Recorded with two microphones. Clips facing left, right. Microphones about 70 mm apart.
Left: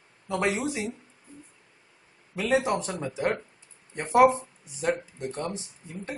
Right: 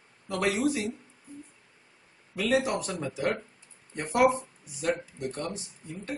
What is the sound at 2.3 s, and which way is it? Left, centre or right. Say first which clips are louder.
Speech: left 2 dB; left.